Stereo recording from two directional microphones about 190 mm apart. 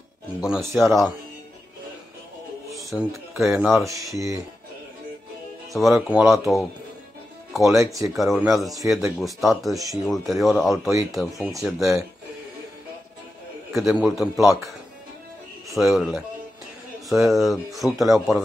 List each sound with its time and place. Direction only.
0.4 s speech: centre (ahead or behind)
2.7 s a sound: centre (ahead or behind)
3.3 s speech: centre (ahead or behind)
4.1 s speech: 15° right (ahead or behind)
5.7 s speech: centre (ahead or behind)
7.8 s speech: 20° right (ahead or behind)
8.2 s speech: centre (ahead or behind)
13.7 s speech: centre (ahead or behind)
15.7 s speech: centre (ahead or behind)